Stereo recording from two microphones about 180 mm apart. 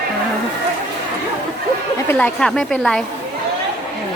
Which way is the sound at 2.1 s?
5° left (ahead or behind).